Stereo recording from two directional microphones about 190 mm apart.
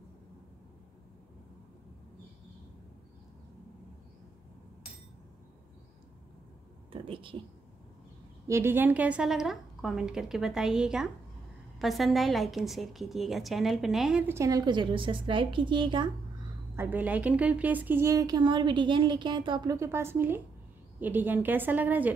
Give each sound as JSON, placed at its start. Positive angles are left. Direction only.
{"t": 6.9, "sound": "a sound", "side_deg": -30}
{"t": 8.5, "sound": "a woman's voice", "side_deg": -15}
{"t": 16.7, "sound": "speech", "side_deg": -10}